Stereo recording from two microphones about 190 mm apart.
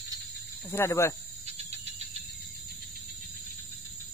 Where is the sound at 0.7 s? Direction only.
15° left (ahead or behind).